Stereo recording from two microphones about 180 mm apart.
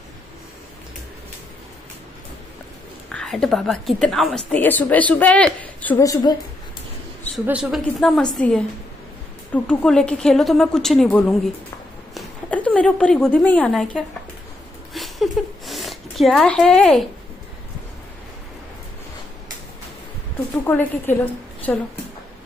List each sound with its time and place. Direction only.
3.1 s a woman's voice: 5° left (ahead or behind)
6.0 s a woman's voice: 20° left (ahead or behind)
7.4 s a woman's voice: 5° right (ahead or behind)
15.0 s a sound: centre (ahead or behind)
20.6 s a woman's voice: 10° left (ahead or behind)